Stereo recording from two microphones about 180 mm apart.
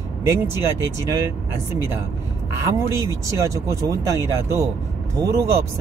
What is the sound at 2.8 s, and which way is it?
Speech, 15° right (ahead or behind).